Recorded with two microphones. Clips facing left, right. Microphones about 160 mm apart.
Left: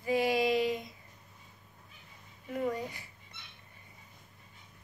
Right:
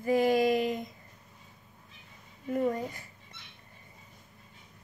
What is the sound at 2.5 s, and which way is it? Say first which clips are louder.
Child singing: right 4 dB; 45° right (ahead or behind).